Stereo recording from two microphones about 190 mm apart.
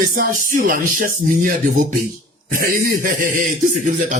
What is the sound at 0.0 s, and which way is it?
Speech, 45° right (ahead or behind).